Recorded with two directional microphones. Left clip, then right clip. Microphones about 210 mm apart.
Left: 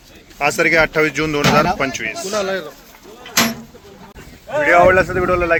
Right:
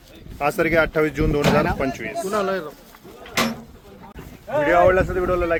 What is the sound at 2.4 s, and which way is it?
Speech, 60° right (ahead or behind).